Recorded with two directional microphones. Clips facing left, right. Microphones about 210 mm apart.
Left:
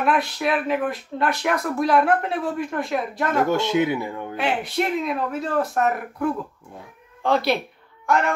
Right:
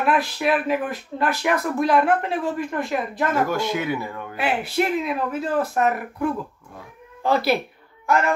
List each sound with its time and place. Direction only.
0.0 s speech: centre (ahead or behind)
3.4 s speech: 25° left (ahead or behind)
4.4 s speech: 5° right (ahead or behind)